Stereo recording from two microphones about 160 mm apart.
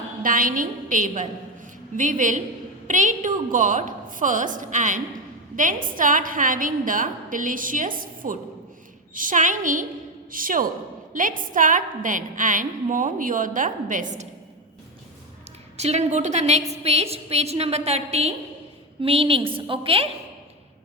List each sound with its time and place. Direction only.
0.2 s a woman's voice: 60° right (ahead or behind)
15.8 s a woman's voice: 45° right (ahead or behind)